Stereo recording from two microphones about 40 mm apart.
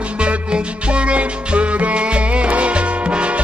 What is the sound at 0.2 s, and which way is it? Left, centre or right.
Music, right.